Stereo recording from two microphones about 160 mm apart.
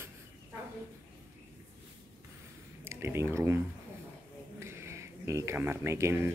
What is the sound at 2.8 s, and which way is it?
Speech, 15° right (ahead or behind).